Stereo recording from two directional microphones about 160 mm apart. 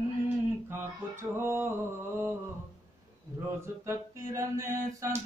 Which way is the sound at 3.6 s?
15° right (ahead or behind).